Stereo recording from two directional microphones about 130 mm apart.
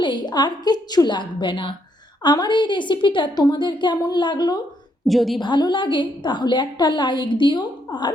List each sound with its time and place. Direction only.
0.0 s a woman's voice: 35° left (ahead or behind)
5.0 s a woman's voice: centre (ahead or behind)
5.4 s a woman's voice: 35° left (ahead or behind)